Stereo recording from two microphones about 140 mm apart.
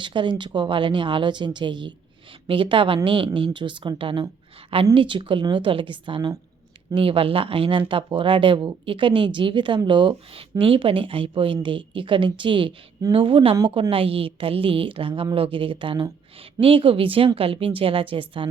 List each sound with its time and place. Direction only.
0.0 s speech: 35° right (ahead or behind)